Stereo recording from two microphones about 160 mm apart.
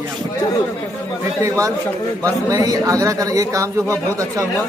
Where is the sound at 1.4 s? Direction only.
20° right (ahead or behind).